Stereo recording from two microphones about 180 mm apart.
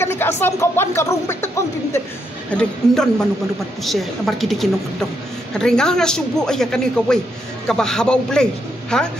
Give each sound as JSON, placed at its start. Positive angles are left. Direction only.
{"t": 0.0, "sound": "a sound", "side_deg": 10}
{"t": 0.4, "sound": "speech", "side_deg": 15}
{"t": 2.5, "sound": "speech", "side_deg": 5}